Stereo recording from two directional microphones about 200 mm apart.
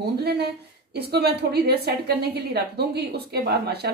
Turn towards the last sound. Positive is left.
turn(degrees=-55)  # may be behind; listen again after turning